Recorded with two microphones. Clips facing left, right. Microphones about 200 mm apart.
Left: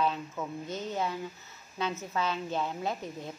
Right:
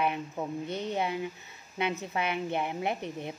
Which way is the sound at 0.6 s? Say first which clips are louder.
Right 2 dB; 65° right (ahead or behind).